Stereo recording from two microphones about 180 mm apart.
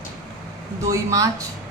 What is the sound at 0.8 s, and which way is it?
Speech, 20° right (ahead or behind).